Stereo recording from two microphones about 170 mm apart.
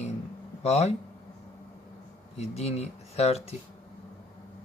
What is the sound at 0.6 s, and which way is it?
Speech, 40° left (ahead or behind).